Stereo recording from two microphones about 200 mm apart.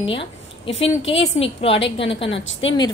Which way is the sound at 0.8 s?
70° left (ahead or behind).